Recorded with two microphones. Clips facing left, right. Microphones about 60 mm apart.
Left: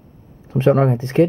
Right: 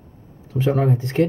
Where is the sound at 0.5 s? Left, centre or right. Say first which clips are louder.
Left 5 dB; left.